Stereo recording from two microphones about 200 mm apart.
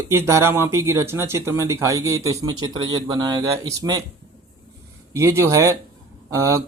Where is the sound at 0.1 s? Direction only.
15° right (ahead or behind).